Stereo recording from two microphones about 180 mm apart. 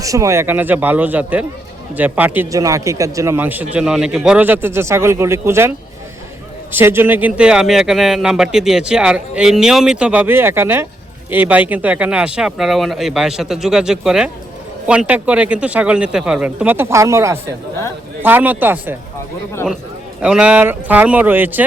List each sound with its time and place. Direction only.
0.0 s speech: 15° right (ahead or behind)
20.2 s speech: 5° right (ahead or behind)